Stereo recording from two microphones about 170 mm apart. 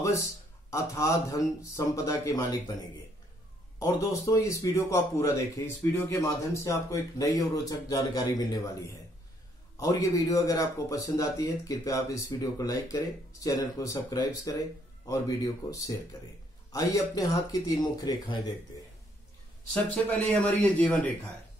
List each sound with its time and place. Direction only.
0.7 s speech: 15° left (ahead or behind)
3.8 s speech: 20° left (ahead or behind)
15.6 s speech: 20° left (ahead or behind)
19.7 s speech: 10° left (ahead or behind)